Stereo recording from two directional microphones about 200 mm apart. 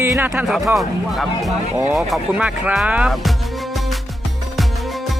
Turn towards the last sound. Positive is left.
turn(degrees=-5)  # may be behind; listen again after turning